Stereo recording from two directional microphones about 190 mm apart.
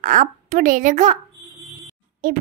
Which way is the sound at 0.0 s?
40° right (ahead or behind).